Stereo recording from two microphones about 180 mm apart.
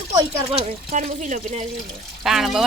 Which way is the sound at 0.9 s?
45° right (ahead or behind).